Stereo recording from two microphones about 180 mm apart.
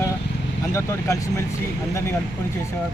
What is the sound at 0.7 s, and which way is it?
Speech, 15° left (ahead or behind).